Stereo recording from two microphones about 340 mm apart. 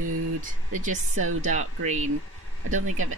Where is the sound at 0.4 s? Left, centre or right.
Right.